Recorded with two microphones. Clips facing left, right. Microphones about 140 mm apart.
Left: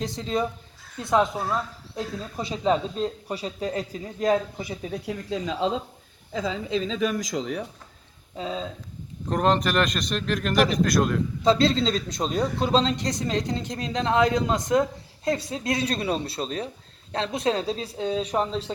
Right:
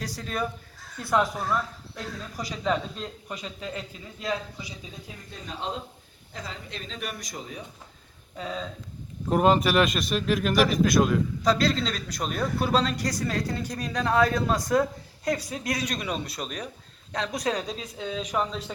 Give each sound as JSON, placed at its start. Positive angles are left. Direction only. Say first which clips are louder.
{"t": 0.0, "sound": "a man's voice", "louder": "left 4 dB", "side_deg": 25}
{"t": 7.2, "sound": "speech", "louder": "left 10 dB", "side_deg": 90}
{"t": 8.4, "sound": "a man's voice", "louder": "left 3 dB", "side_deg": 25}
{"t": 9.3, "sound": "speech", "louder": "right 1 dB", "side_deg": -5}
{"t": 11.4, "sound": "a man's voice", "louder": "left 5 dB", "side_deg": 25}